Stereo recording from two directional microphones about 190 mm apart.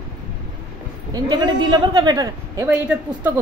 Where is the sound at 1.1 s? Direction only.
20° right (ahead or behind).